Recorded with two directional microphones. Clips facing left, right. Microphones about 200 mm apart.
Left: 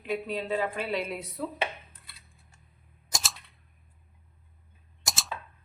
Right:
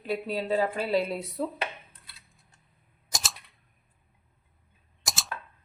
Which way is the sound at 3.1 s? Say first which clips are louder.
Even; centre (ahead or behind).